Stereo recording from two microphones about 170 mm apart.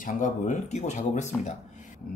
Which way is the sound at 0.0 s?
45° left (ahead or behind).